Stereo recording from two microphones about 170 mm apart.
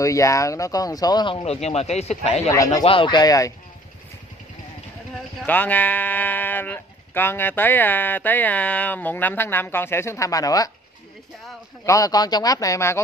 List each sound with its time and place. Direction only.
0.0 s speech: 20° left (ahead or behind); by 2.5 s 40° left (ahead or behind)
2.5 s speech: 20° left (ahead or behind)
2.8 s speech: 30° left (ahead or behind)
5.4 s speech: 10° left (ahead or behind)
11.8 s speech: 20° left (ahead or behind)